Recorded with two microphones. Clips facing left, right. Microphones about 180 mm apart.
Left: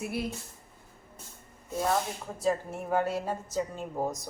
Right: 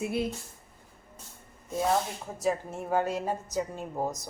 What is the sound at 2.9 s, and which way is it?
A woman's voice, 15° right (ahead or behind).